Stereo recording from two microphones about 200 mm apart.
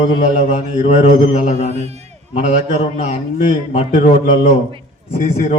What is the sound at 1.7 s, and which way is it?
Speech, 30° right (ahead or behind).